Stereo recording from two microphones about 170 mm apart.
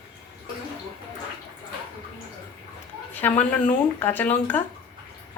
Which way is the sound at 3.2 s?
5° left (ahead or behind).